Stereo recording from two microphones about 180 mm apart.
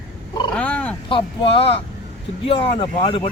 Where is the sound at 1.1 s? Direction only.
30° left (ahead or behind).